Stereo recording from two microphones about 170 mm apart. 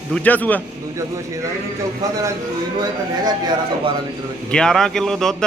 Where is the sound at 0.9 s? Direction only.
20° right (ahead or behind).